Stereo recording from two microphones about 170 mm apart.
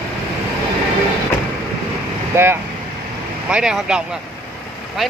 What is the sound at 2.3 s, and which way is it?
Speech, 15° right (ahead or behind).